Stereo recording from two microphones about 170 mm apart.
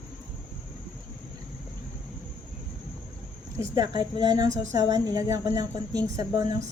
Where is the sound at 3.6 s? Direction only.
20° right (ahead or behind).